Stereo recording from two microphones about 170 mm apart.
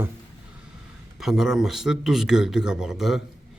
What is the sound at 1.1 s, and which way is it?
Speech, centre (ahead or behind).